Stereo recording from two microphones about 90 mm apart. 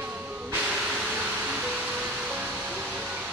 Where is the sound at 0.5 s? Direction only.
15° right (ahead or behind).